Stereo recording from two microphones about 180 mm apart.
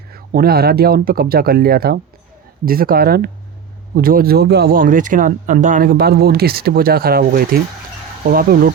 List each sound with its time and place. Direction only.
0.1 s speech: 55° right (ahead or behind)